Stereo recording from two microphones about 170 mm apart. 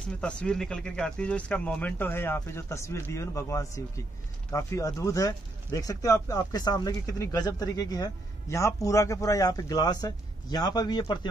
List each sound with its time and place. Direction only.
0.2 s speech: 5° left (ahead or behind); by 11.1 s 25° left (ahead or behind)